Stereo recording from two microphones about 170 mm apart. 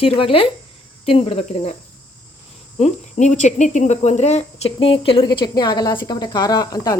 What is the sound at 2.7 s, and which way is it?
Speech, 40° left (ahead or behind).